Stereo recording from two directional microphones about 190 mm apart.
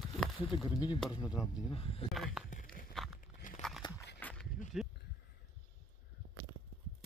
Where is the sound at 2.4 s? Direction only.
5° right (ahead or behind).